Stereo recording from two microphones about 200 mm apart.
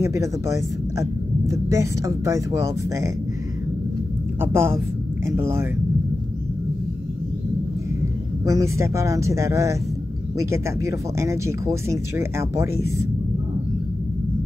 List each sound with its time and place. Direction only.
0.0 s speech: 15° right (ahead or behind)
4.4 s speech: 10° right (ahead or behind)
8.5 s speech: 15° right (ahead or behind)